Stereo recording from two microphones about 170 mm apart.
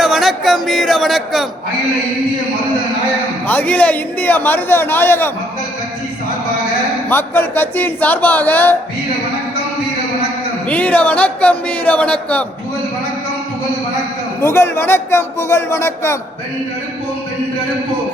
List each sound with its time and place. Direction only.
0.0 s speech: centre (ahead or behind)
3.4 s a man's voice: 10° left (ahead or behind)
7.1 s a man's voice: 10° left (ahead or behind)
10.7 s a man's voice: 10° left (ahead or behind)
14.4 s a man's voice: 15° left (ahead or behind)